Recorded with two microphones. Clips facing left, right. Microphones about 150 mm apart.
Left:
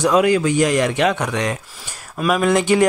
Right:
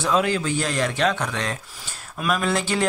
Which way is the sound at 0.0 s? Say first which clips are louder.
Left 7 dB; 10° left (ahead or behind).